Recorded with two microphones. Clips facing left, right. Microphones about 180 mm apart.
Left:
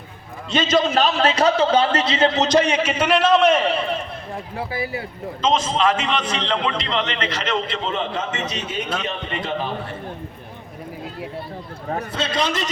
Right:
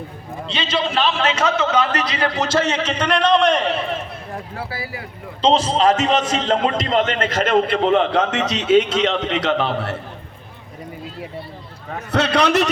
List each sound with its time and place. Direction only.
0.4 s a man's voice: 45° left (ahead or behind); by 4.0 s centre (ahead or behind)
4.5 s a man's voice: 20° left (ahead or behind)
5.4 s speech: 35° right (ahead or behind); by 10.0 s 80° right
12.1 s a man's voice: 70° right (ahead or behind)